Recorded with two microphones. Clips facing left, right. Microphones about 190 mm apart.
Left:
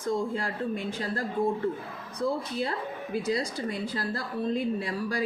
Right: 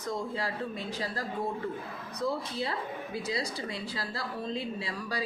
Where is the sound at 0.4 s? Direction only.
50° left (ahead or behind).